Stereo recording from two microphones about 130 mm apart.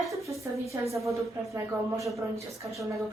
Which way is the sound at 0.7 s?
25° right (ahead or behind).